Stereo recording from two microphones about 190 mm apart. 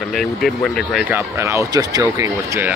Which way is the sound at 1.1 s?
15° right (ahead or behind).